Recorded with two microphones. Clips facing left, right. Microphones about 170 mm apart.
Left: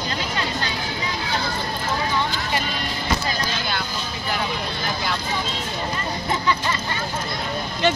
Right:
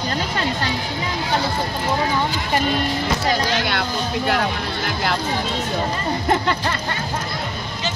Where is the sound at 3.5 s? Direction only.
80° right.